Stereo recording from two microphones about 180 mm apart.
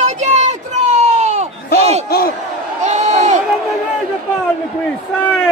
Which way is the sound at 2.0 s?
60° left (ahead or behind).